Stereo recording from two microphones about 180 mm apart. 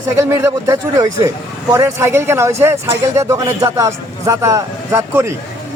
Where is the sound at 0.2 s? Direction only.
15° right (ahead or behind).